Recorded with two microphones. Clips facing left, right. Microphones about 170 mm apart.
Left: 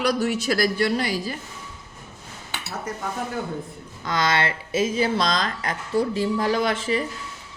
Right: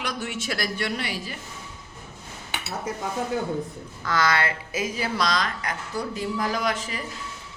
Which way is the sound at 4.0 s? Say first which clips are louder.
Left 1 dB; 20° left (ahead or behind).